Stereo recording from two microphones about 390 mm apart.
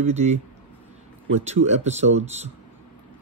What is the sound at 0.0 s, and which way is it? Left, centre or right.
Speech, centre.